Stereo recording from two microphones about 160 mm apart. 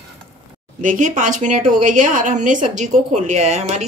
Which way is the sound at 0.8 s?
55° right (ahead or behind).